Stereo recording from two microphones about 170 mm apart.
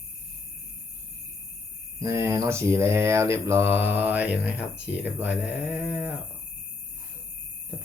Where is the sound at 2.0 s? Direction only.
15° right (ahead or behind).